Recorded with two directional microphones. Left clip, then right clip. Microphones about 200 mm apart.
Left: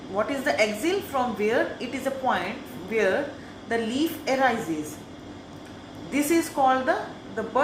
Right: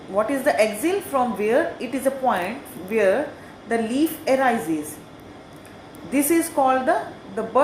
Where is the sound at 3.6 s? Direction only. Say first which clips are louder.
Right 4 dB; 50° right (ahead or behind).